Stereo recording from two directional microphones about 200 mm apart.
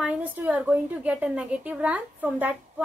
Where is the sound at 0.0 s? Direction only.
5° right (ahead or behind).